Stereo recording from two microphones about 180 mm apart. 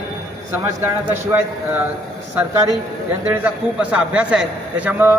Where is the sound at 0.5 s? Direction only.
10° right (ahead or behind).